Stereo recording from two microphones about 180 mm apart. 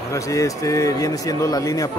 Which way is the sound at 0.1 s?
15° left (ahead or behind).